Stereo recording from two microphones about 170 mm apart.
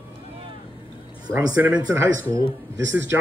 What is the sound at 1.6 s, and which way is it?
Speech, 10° right (ahead or behind).